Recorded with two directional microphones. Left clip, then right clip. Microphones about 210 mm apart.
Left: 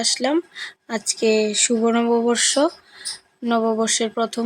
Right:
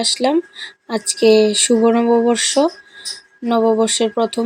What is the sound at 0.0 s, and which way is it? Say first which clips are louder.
Speech: right 4 dB; 5° right (ahead or behind).